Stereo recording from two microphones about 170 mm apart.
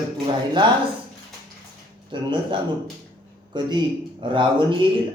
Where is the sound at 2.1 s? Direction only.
30° right (ahead or behind).